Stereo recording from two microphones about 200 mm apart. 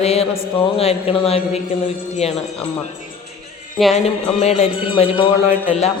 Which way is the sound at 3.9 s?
30° left (ahead or behind).